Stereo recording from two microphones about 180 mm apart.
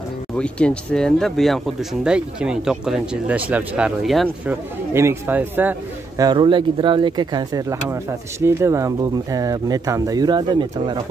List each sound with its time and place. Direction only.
0.4 s speech: 5° left (ahead or behind)
4.9 s a man's voice: 15° right (ahead or behind)
6.2 s speech: 25° right (ahead or behind)